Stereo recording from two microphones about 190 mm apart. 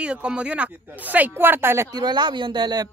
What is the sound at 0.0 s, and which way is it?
Speech, 5° right (ahead or behind).